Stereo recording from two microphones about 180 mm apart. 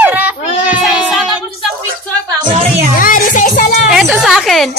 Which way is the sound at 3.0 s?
45° left (ahead or behind).